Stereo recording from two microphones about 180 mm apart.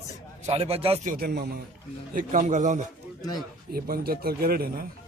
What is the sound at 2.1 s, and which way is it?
Speech, 45° right (ahead or behind).